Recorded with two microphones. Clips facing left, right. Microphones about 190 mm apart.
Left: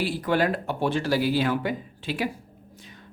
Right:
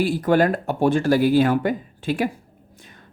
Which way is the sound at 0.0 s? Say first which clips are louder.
Right 6 dB; 45° right (ahead or behind).